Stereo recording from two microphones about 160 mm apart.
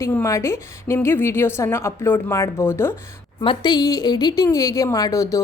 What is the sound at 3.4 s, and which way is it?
A woman's voice, 30° left (ahead or behind).